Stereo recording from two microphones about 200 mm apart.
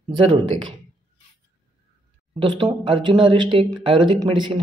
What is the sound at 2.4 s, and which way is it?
Speech, 25° right (ahead or behind).